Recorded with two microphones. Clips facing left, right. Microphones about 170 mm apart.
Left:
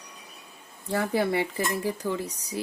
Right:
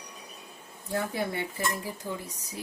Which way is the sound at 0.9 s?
75° left (ahead or behind).